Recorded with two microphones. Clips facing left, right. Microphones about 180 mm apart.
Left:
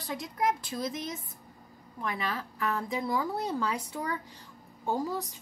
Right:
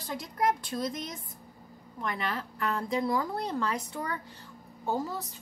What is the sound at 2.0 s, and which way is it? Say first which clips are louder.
A woman's voice: even; 5° left (ahead or behind).